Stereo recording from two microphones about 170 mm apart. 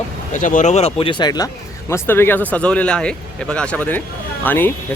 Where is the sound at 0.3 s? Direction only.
50° left (ahead or behind); by 1.5 s 25° left (ahead or behind).